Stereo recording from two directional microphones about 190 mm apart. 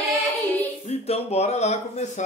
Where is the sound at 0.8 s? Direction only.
35° left (ahead or behind).